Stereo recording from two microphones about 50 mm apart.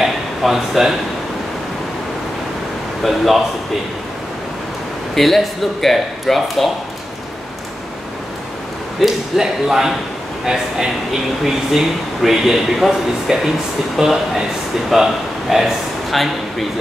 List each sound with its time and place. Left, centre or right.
0.0 s a sound: centre
3.0 s speech: centre
5.1 s speech: centre
9.0 s speech: centre